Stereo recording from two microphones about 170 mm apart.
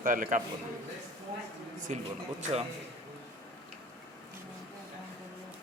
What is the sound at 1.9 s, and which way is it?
Speech, 45° right (ahead or behind).